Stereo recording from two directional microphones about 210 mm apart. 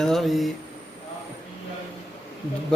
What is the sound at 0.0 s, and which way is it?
Speech, centre (ahead or behind).